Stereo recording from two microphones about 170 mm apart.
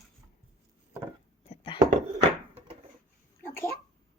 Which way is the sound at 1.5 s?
30° left (ahead or behind).